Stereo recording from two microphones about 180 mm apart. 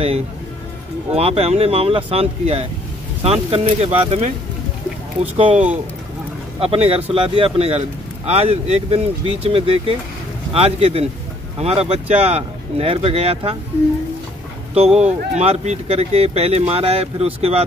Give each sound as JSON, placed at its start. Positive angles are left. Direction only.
{"t": 1.1, "sound": "speech", "side_deg": -35}
{"t": 15.0, "sound": "speech", "side_deg": -35}